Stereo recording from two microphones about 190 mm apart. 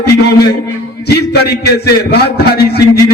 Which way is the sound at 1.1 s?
60° left (ahead or behind).